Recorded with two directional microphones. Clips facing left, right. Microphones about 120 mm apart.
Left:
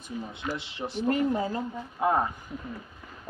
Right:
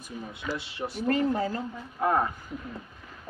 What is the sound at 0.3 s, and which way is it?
Speech, 20° left (ahead or behind).